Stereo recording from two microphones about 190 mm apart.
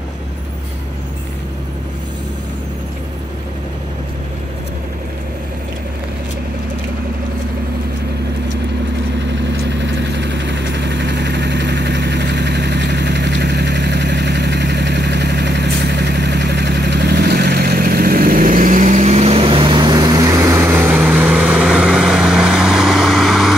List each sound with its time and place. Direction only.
9.5 s vehicle: 70° right (ahead or behind); by 23.5 s centre (ahead or behind)